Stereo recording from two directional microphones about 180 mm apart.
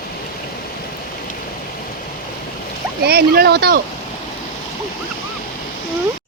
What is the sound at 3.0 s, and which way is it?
Speech, 60° right (ahead or behind).